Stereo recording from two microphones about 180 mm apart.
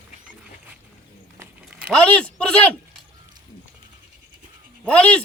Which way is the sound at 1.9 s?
5° left (ahead or behind).